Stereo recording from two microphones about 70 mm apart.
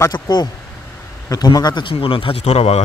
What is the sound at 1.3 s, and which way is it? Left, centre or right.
Speech, left.